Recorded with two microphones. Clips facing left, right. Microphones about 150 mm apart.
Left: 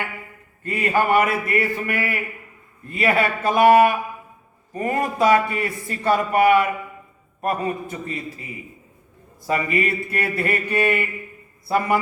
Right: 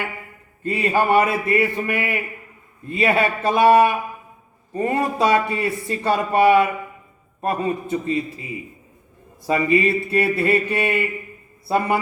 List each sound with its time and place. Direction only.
0.6 s a man's voice: 25° right (ahead or behind)
9.5 s a man's voice: 25° right (ahead or behind)